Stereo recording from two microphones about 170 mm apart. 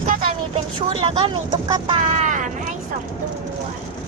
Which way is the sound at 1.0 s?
30° right (ahead or behind).